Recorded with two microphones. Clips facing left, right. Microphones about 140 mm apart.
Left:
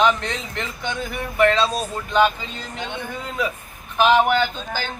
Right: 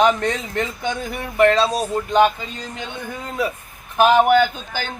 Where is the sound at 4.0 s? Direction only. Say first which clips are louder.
Right 3 dB; 45° right (ahead or behind).